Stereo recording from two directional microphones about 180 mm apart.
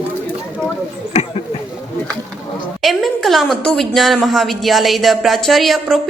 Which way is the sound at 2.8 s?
Centre (ahead or behind).